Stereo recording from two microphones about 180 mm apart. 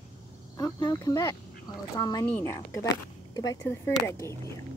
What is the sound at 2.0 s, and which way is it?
Speech, 20° left (ahead or behind).